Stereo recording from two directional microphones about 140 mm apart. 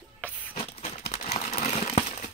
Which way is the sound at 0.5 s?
45° left (ahead or behind).